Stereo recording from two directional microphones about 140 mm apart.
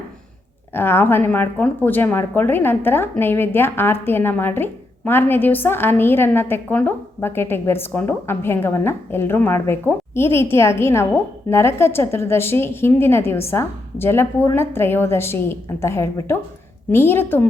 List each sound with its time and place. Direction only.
0.7 s speech: 15° left (ahead or behind)